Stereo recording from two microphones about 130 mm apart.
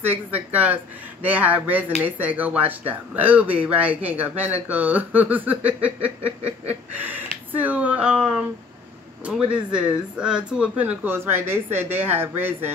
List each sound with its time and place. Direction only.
0.1 s speech: 15° right (ahead or behind)
7.5 s speech: 10° right (ahead or behind)